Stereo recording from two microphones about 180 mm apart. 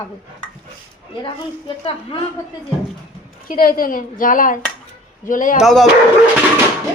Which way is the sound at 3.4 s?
55° left (ahead or behind).